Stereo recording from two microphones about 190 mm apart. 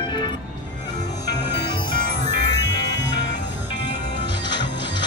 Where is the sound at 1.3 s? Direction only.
65° left (ahead or behind).